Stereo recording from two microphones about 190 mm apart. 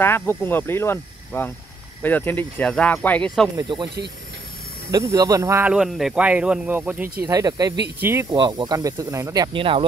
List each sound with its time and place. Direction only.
0.0 s speech: 10° left (ahead or behind)
3.5 s speech: 25° right (ahead or behind)
4.9 s speech: 20° right (ahead or behind)